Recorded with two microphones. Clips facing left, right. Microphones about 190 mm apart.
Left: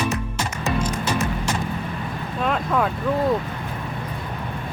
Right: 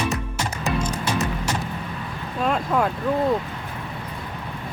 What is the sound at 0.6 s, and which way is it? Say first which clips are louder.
Music: left 1 dB; 10° right (ahead or behind).